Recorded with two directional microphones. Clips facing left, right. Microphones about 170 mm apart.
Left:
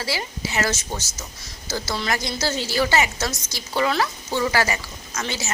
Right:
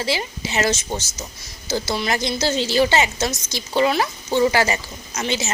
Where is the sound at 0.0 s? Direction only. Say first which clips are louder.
Right 4 dB; 20° right (ahead or behind).